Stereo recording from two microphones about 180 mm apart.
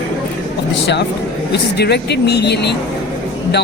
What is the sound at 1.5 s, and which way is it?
A man's voice, 65° left (ahead or behind).